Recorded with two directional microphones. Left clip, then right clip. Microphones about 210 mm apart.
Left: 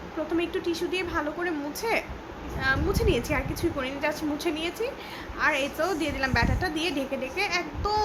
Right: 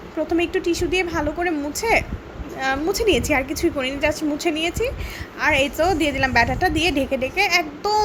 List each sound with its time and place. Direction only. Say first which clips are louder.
0.3 s a woman's voice: right 7 dB; 25° right (ahead or behind)